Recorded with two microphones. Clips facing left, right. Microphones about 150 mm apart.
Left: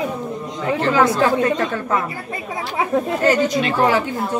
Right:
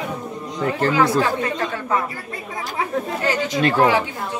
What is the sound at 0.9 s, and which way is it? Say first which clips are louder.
Speech: left 4 dB; 45° left (ahead or behind).